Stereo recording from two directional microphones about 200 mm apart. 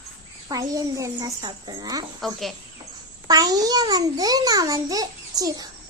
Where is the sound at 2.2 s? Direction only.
Centre (ahead or behind).